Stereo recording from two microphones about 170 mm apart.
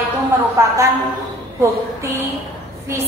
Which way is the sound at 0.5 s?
15° right (ahead or behind).